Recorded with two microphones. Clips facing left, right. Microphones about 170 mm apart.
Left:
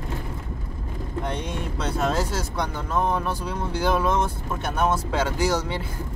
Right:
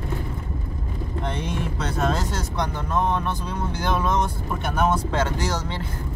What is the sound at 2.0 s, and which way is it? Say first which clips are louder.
Speech: even; 5° left (ahead or behind).